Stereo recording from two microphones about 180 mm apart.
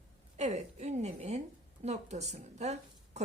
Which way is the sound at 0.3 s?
40° right (ahead or behind).